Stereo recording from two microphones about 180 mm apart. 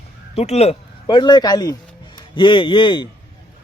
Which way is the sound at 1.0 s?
25° left (ahead or behind).